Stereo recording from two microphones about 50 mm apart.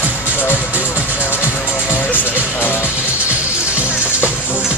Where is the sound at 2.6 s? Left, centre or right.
Left.